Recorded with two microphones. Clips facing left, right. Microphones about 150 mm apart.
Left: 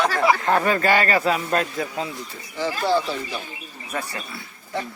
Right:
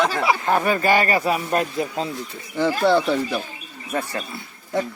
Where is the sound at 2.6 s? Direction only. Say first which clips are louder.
Right 4 dB; 60° right (ahead or behind).